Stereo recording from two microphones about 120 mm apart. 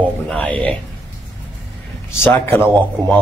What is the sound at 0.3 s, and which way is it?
Speech, 10° left (ahead or behind).